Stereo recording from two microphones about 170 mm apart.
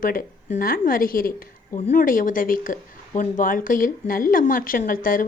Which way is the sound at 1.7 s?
45° left (ahead or behind).